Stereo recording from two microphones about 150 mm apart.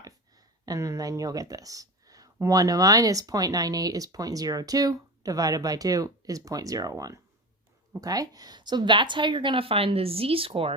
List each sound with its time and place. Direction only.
0.0 s a woman's voice: 25° right (ahead or behind)